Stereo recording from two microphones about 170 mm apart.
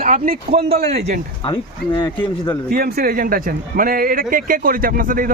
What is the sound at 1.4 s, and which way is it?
Speech, 30° left (ahead or behind).